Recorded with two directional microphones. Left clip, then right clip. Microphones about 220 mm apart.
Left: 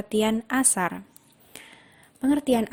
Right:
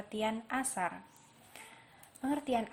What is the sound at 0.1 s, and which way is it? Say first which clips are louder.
Speech: left 11 dB; 45° left (ahead or behind).